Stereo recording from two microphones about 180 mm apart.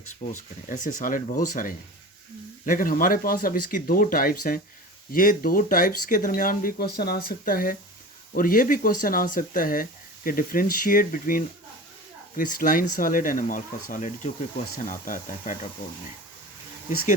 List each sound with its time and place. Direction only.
0.2 s speech: 40° left (ahead or behind)